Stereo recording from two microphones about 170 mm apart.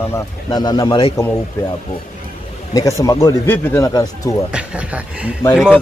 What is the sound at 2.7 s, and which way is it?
Speech, 20° left (ahead or behind).